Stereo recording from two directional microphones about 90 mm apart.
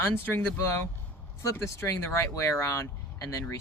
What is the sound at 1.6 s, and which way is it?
Speech, 35° left (ahead or behind).